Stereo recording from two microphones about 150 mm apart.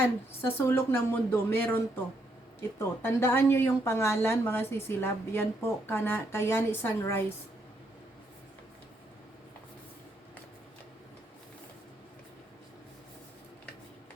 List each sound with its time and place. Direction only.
0.4 s speech: 15° left (ahead or behind)